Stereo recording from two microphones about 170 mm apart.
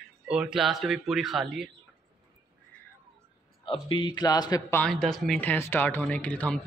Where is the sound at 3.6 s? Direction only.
30° left (ahead or behind).